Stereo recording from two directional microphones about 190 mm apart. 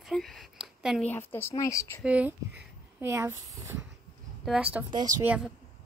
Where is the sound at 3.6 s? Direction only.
10° right (ahead or behind).